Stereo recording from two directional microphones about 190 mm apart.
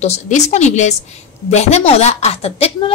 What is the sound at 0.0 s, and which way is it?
A woman's voice, 35° left (ahead or behind).